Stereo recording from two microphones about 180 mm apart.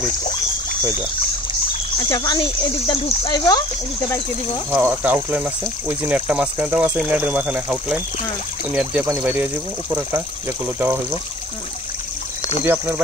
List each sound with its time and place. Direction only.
2.0 s speech: 20° left (ahead or behind)
4.6 s speech: 10° right (ahead or behind)
12.6 s speech: 10° right (ahead or behind)